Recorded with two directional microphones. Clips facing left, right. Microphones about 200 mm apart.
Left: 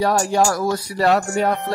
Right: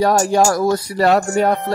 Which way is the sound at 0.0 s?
45° right (ahead or behind).